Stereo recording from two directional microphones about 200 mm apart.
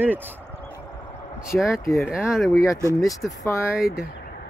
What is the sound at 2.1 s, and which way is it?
Speech, centre (ahead or behind).